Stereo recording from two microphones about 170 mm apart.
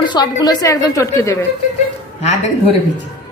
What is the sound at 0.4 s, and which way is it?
A woman's voice, 20° left (ahead or behind).